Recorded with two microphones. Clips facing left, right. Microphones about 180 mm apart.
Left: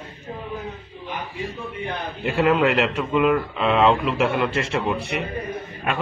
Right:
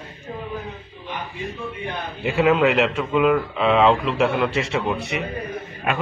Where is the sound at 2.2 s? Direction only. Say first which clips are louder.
Right 1 dB; centre (ahead or behind).